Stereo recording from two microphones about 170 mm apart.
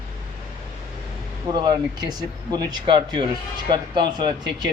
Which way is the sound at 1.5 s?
25° right (ahead or behind).